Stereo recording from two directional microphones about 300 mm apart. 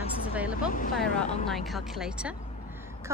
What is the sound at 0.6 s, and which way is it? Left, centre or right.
Speech, left.